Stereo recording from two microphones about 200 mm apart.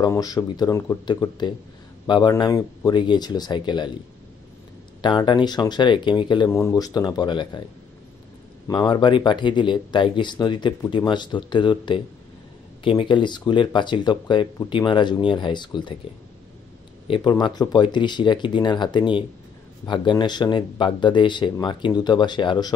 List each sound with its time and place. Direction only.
0.0 s speech: 20° left (ahead or behind)
5.0 s speech: 25° left (ahead or behind)
8.6 s speech: 20° left (ahead or behind)
17.1 s speech: 20° left (ahead or behind)